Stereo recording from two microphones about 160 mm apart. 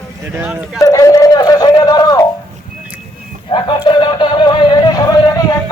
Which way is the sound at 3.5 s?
25° left (ahead or behind).